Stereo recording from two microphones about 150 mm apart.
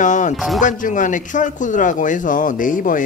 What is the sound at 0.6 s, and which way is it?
Speech, 60° left (ahead or behind).